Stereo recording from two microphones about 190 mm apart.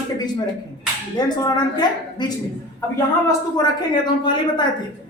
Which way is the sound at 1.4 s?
20° left (ahead or behind).